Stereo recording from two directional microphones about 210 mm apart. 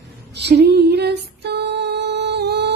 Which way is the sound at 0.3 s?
55° right (ahead or behind).